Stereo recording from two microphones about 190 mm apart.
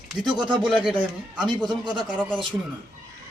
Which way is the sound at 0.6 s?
5° right (ahead or behind).